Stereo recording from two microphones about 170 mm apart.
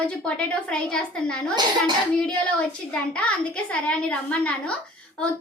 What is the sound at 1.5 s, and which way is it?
Speech, 25° right (ahead or behind).